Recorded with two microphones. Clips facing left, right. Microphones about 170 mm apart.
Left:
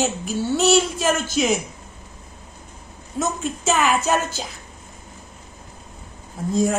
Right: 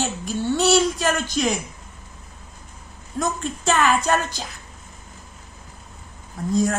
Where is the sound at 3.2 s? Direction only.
5° left (ahead or behind).